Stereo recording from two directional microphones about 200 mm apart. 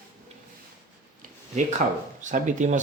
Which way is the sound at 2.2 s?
40° right (ahead or behind).